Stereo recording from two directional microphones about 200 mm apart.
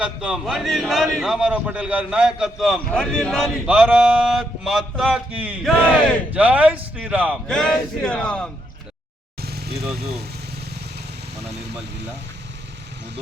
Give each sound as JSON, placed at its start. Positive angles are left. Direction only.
{"t": 0.0, "sound": "a man's voice", "side_deg": -5}
{"t": 9.4, "sound": "vehicle", "side_deg": -55}